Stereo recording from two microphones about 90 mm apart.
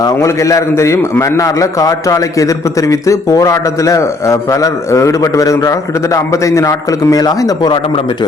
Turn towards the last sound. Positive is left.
turn(degrees=45)  # may be behind; listen again after turning